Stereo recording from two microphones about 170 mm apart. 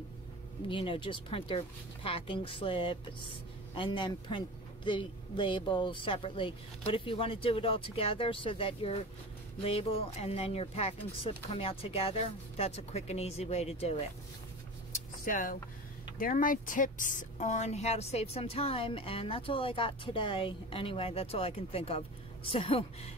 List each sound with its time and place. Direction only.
0.7 s speech: 30° left (ahead or behind)
15.2 s speech: 55° left (ahead or behind); by 23.1 s 35° left (ahead or behind)